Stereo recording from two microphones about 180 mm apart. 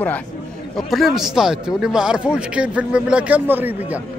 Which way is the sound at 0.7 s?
Centre (ahead or behind).